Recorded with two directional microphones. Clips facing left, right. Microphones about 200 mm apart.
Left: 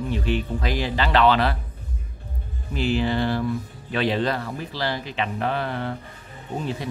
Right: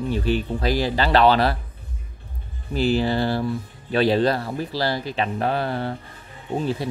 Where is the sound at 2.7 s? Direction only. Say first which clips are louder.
Right 2 dB; 35° right (ahead or behind).